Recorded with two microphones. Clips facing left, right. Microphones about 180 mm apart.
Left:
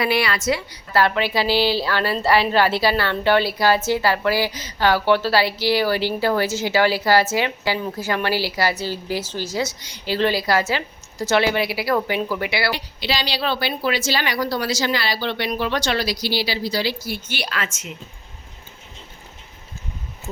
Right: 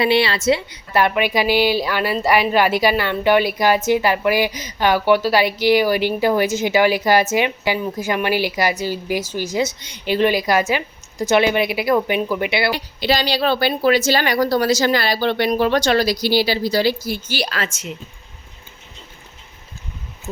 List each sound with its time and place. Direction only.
0.0 s a woman's voice: 25° right (ahead or behind)
12.7 s a woman's voice: 50° right (ahead or behind)